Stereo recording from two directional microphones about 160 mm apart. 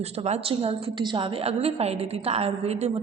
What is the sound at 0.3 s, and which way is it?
A woman's voice, 40° right (ahead or behind).